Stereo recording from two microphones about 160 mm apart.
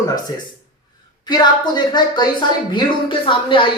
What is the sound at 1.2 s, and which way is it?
A woman's voice, 25° left (ahead or behind).